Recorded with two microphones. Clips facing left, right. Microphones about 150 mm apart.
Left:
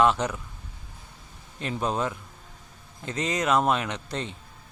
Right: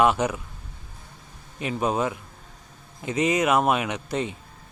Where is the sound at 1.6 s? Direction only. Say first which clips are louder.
Right 3 dB; 10° right (ahead or behind).